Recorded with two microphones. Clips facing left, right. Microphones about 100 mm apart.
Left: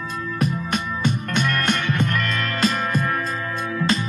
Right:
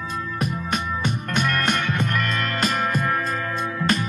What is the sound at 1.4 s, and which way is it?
Music, 30° right (ahead or behind).